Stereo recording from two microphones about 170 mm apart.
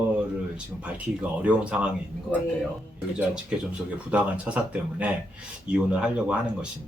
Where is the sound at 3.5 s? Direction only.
5° right (ahead or behind).